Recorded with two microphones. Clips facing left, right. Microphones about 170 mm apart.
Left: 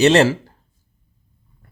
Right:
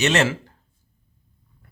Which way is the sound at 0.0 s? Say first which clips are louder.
Left 7 dB; 35° left (ahead or behind).